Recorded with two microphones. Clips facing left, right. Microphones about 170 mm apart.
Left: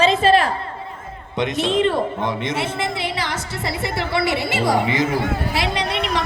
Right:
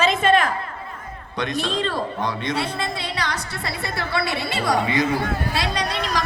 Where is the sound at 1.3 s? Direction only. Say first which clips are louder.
Left 5 dB; 20° left (ahead or behind).